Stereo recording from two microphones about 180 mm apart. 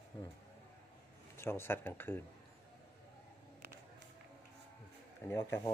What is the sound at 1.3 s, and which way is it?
Speech, 15° left (ahead or behind).